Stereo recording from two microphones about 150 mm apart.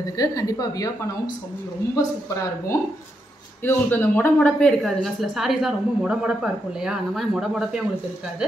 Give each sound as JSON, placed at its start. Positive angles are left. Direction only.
{"t": 0.2, "sound": "a woman's voice", "side_deg": 25}
{"t": 3.6, "sound": "a woman's voice", "side_deg": 15}